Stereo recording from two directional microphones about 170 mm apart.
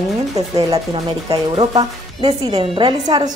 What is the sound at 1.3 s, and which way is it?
Speech, 25° right (ahead or behind).